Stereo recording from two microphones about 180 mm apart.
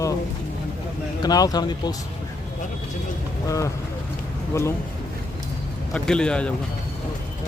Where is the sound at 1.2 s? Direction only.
20° left (ahead or behind).